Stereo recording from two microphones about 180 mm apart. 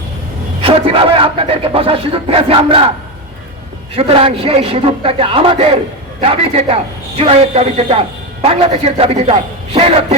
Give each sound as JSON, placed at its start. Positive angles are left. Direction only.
{"t": 0.6, "sound": "a man's voice", "side_deg": -30}
{"t": 3.9, "sound": "a man's voice", "side_deg": -35}